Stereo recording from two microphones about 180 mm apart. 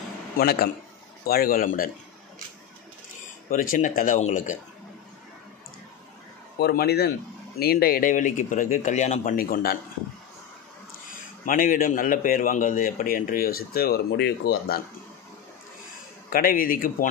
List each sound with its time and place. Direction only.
0.4 s a man's voice: 60° left (ahead or behind)
3.4 s a man's voice: 50° left (ahead or behind)
6.6 s a man's voice: 60° left (ahead or behind)
11.4 s a man's voice: 50° left (ahead or behind)
16.3 s a man's voice: 55° left (ahead or behind)